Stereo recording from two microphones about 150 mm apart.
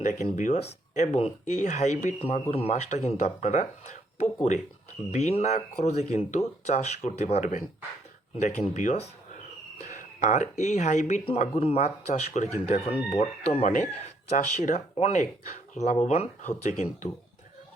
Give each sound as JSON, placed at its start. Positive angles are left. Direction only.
{"t": 0.0, "sound": "speech", "side_deg": 55}